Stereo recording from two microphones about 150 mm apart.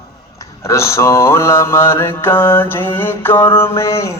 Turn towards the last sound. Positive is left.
turn(degrees=20)  # may be behind; listen again after turning